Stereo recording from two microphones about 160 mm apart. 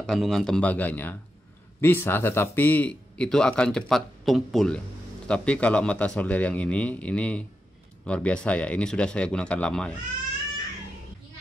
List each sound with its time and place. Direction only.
0.0 s speech: centre (ahead or behind)